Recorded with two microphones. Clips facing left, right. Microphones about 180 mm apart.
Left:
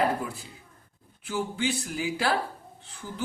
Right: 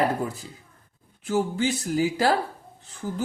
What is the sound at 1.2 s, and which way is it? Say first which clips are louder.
Speech: right 5 dB; 40° right (ahead or behind).